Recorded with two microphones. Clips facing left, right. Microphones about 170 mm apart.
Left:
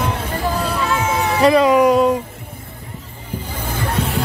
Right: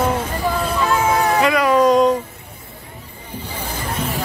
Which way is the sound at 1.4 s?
30° left (ahead or behind).